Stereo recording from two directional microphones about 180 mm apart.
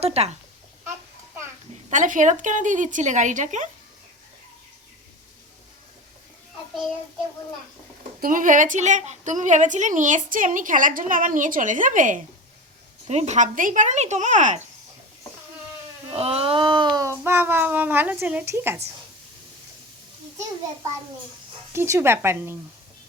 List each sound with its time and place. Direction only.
0.0 s speech: 35° right (ahead or behind)
1.9 s a woman's voice: 45° right (ahead or behind)
8.2 s a woman's voice: 50° right (ahead or behind)
16.0 s a child's voice: 30° right (ahead or behind); by 18.8 s 15° right (ahead or behind)
21.7 s speech: 15° right (ahead or behind)